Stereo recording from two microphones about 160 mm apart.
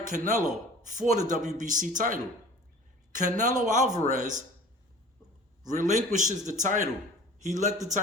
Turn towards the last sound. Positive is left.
turn(degrees=-50)  # may be behind; listen again after turning